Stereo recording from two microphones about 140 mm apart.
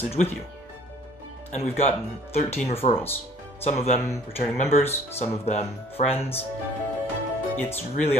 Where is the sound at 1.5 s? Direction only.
55° left (ahead or behind).